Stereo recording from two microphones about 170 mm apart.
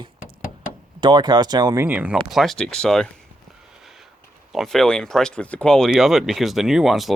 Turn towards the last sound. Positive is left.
turn(degrees=0)  # may be behind; listen again after turning